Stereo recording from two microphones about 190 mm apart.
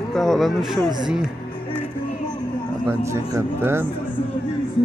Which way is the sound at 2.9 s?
15° right (ahead or behind).